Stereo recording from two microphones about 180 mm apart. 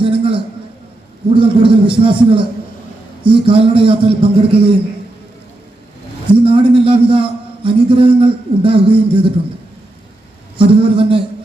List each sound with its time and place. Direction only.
0.0 s a sound: 30° right (ahead or behind)
1.3 s a man's voice: 30° right (ahead or behind)
6.3 s a man's voice: 30° right (ahead or behind)
10.6 s a man's voice: 30° right (ahead or behind)